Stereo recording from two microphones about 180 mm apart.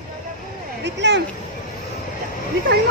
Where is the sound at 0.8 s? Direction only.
75° right (ahead or behind).